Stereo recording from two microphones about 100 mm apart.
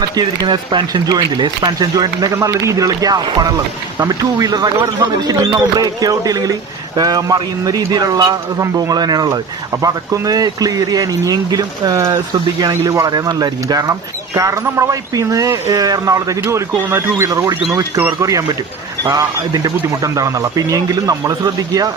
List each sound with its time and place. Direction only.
0.2 s speech: 45° right (ahead or behind)